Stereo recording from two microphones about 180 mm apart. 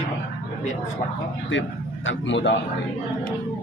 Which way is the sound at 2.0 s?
90° left.